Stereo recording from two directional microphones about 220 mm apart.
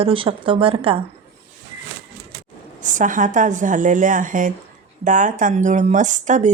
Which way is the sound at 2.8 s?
35° right (ahead or behind).